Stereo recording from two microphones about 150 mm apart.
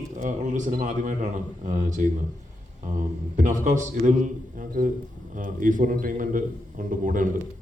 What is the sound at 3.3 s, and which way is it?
Speech, 55° right (ahead or behind).